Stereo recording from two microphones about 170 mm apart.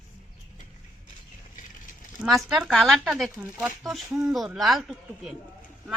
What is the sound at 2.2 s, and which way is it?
Speech, centre (ahead or behind).